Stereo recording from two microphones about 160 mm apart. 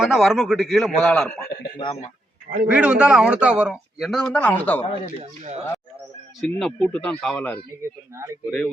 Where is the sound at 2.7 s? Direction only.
5° right (ahead or behind); by 4.8 s 10° left (ahead or behind).